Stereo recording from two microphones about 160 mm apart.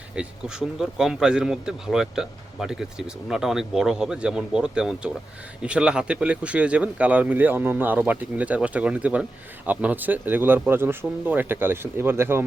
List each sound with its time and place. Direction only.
0.2 s speech: 5° right (ahead or behind)